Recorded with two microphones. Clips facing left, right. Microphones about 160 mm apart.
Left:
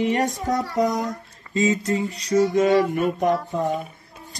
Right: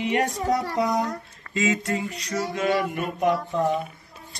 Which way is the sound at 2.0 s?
35° left (ahead or behind).